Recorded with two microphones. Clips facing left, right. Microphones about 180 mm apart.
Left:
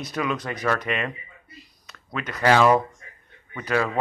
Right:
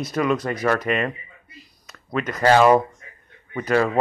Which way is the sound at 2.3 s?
40° right (ahead or behind).